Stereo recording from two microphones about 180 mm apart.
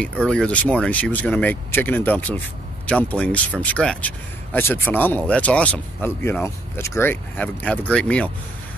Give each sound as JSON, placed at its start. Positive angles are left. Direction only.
{"t": 0.3, "sound": "speech", "side_deg": 5}